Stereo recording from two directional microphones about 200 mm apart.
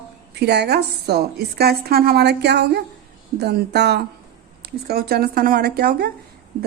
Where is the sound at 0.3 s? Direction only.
55° right (ahead or behind).